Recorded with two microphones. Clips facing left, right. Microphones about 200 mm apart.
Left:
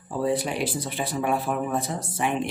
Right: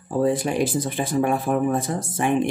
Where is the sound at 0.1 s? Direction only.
45° right (ahead or behind).